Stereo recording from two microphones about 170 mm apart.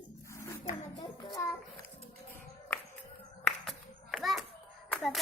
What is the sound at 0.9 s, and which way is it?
Child singing, 25° left (ahead or behind).